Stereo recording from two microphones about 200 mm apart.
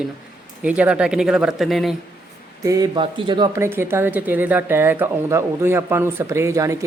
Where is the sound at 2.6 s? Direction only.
20° right (ahead or behind).